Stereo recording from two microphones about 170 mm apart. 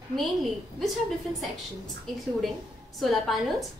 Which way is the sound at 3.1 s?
Centre (ahead or behind).